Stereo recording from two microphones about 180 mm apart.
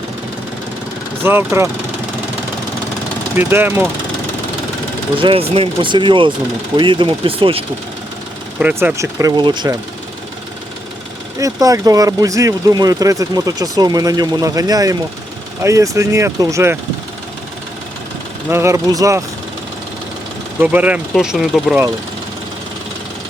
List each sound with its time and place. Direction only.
1.2 s speech: 10° right (ahead or behind)
3.3 s speech: 10° right (ahead or behind)
5.2 s speech: 30° right (ahead or behind)
8.5 s speech: 10° right (ahead or behind); by 9.7 s 25° right (ahead or behind)
11.3 s speech: 20° right (ahead or behind)
18.4 s speech: 15° right (ahead or behind)
20.6 s speech: 10° right (ahead or behind)